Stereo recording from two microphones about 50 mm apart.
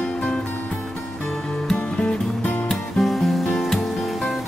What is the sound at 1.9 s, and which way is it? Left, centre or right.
Music, left.